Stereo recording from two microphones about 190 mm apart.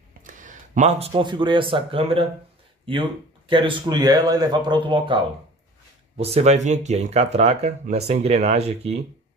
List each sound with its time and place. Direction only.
0.2 s speech: 45° right (ahead or behind)